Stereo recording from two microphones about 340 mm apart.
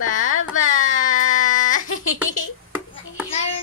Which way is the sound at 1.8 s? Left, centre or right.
Left.